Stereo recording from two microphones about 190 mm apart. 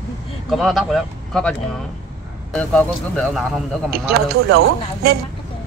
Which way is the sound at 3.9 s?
55° right (ahead or behind).